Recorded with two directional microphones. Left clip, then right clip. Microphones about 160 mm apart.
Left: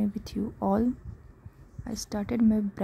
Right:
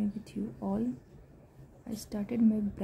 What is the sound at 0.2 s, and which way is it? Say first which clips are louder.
Speech: left 8 dB; 65° left (ahead or behind).